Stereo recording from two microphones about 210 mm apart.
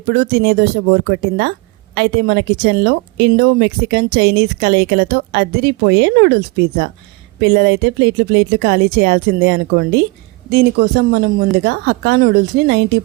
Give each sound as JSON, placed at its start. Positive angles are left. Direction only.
{"t": 0.1, "sound": "a woman's voice", "side_deg": -50}